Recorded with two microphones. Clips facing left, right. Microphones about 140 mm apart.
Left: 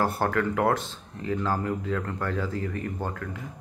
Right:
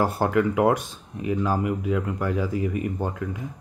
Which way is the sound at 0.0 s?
15° right (ahead or behind).